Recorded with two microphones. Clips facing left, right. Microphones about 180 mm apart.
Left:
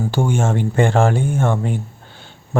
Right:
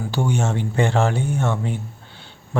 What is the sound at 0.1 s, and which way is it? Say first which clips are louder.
Speech: left 1 dB; 50° left (ahead or behind).